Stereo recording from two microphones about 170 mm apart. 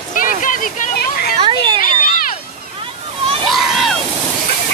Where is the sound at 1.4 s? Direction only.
30° right (ahead or behind).